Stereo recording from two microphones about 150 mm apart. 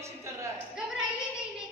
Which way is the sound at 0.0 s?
20° right (ahead or behind).